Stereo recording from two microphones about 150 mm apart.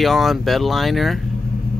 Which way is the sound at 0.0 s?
Centre (ahead or behind).